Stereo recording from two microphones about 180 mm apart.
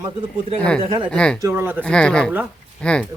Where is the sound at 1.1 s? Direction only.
5° left (ahead or behind).